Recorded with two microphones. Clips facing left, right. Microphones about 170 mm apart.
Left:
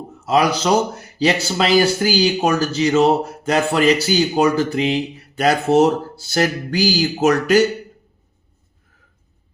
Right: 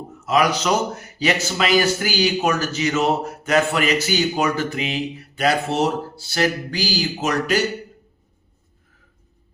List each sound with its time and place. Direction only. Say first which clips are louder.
0.3 s speech: left 2 dB; 30° left (ahead or behind)